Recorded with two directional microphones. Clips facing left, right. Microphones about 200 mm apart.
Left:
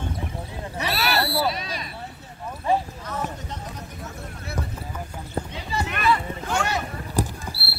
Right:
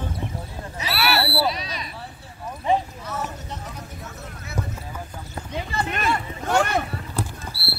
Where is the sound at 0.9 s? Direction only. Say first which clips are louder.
Right 2 dB; 40° left (ahead or behind).